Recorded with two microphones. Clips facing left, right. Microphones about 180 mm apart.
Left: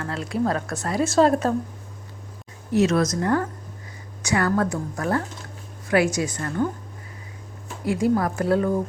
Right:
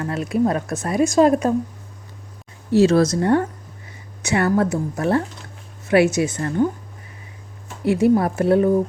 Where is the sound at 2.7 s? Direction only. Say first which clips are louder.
Right 5 dB; 30° right (ahead or behind).